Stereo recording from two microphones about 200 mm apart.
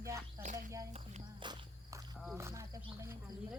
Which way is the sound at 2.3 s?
15° right (ahead or behind).